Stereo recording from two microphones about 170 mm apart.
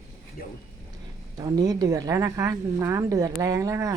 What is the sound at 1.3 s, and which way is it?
A woman's voice, 20° right (ahead or behind).